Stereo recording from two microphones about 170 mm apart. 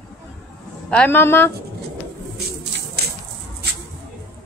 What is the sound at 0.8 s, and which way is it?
Child singing, 10° left (ahead or behind).